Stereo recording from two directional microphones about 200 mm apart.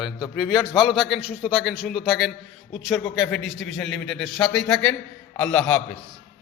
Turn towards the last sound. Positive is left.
turn(degrees=5)  # may be behind; listen again after turning